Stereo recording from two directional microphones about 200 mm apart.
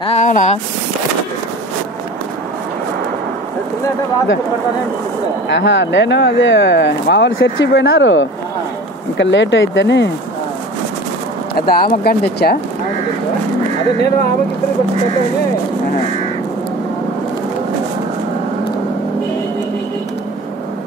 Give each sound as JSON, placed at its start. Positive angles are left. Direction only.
{"t": 0.0, "sound": "speech", "side_deg": 35}
{"t": 5.5, "sound": "speech", "side_deg": 65}
{"t": 11.7, "sound": "speech", "side_deg": 50}